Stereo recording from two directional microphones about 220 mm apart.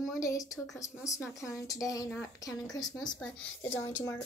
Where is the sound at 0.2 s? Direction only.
15° left (ahead or behind).